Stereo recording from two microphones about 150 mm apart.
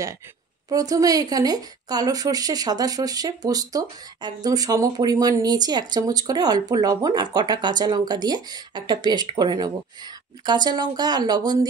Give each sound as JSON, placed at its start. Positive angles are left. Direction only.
{"t": 0.7, "sound": "speech", "side_deg": -25}